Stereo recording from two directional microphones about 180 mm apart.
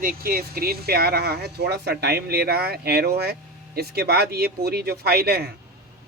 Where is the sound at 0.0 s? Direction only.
55° right (ahead or behind).